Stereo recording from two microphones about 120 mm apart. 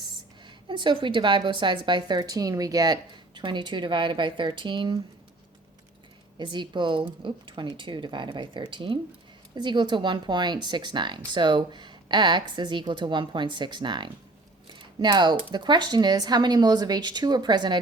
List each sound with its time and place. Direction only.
0.7 s a woman's voice: 40° right (ahead or behind)
6.4 s a woman's voice: 40° right (ahead or behind)
14.7 s a sound: 40° right (ahead or behind)
15.5 s a woman's voice: 40° right (ahead or behind)